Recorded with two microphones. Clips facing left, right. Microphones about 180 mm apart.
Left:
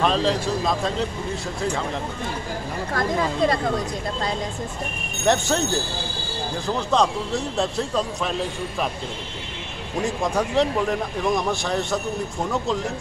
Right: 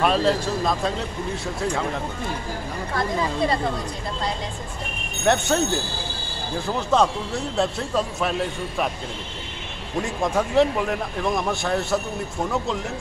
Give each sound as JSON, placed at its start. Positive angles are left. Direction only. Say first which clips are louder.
{"t": 0.0, "sound": "speech", "louder": "right 1 dB", "side_deg": -5}
{"t": 2.9, "sound": "speech", "louder": "left 1 dB", "side_deg": 45}
{"t": 5.2, "sound": "speech", "louder": "even", "side_deg": 0}
{"t": 6.9, "sound": "speech", "louder": "right 1 dB", "side_deg": 0}
{"t": 10.0, "sound": "speech", "louder": "left 1 dB", "side_deg": 0}